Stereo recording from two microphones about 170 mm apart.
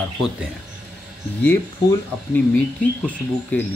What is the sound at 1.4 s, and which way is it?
Speech, 10° left (ahead or behind).